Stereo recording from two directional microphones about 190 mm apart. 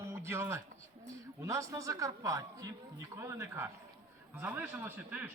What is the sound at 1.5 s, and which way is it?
A man's voice, 15° right (ahead or behind).